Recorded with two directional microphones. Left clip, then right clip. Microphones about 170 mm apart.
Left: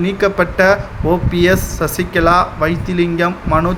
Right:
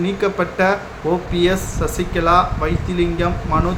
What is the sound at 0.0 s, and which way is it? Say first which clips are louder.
Speech: left 5 dB; 35° left (ahead or behind).